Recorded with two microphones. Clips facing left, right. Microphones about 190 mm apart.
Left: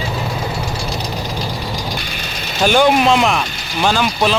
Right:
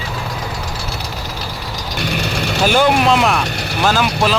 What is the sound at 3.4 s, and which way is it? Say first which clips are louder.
Vehicle: right 2 dB; 70° right (ahead or behind).